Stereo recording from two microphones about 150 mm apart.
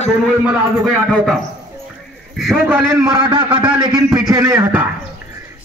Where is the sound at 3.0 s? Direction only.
30° right (ahead or behind).